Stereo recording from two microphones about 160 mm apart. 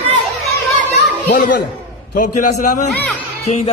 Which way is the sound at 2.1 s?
55° left (ahead or behind).